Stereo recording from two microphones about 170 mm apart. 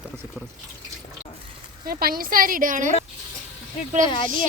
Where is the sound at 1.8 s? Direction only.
60° right (ahead or behind).